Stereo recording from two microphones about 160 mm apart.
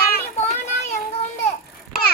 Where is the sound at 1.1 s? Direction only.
40° left (ahead or behind).